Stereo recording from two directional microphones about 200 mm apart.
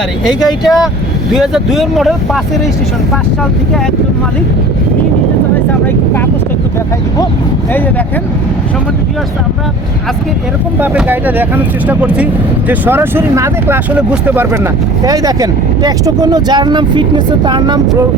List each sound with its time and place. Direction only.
0.6 s speech: centre (ahead or behind)
10.8 s speech: 10° right (ahead or behind)